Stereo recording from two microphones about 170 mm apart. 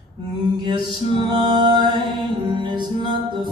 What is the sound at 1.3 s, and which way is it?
Music, 25° right (ahead or behind).